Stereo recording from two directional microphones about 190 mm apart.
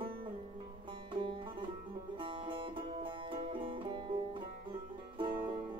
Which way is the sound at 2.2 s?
25° right (ahead or behind).